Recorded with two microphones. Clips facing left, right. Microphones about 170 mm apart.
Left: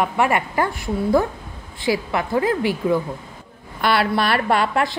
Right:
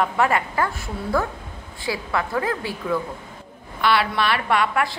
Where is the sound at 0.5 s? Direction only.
25° left (ahead or behind).